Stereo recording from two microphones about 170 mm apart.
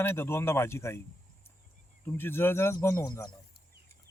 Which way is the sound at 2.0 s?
15° left (ahead or behind).